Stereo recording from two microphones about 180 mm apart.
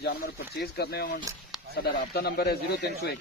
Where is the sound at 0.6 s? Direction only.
65° left (ahead or behind).